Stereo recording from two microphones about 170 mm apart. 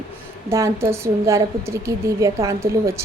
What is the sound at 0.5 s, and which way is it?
A woman's voice, 15° right (ahead or behind).